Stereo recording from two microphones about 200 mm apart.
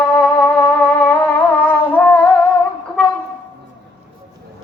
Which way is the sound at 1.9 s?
10° left (ahead or behind).